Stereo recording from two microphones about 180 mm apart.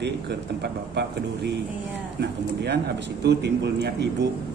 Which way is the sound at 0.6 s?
65° right (ahead or behind).